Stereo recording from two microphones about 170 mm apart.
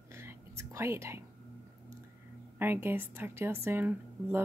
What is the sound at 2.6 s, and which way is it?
A woman's voice, 15° right (ahead or behind).